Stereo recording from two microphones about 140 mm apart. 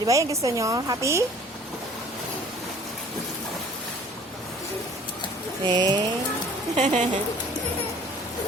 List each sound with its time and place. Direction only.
0.0 s a woman's voice: 25° right (ahead or behind)
5.6 s a woman's voice: 30° right (ahead or behind)
6.7 s a woman's voice: 55° right (ahead or behind)